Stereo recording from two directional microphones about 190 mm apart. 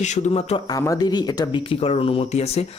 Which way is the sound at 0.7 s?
20° left (ahead or behind).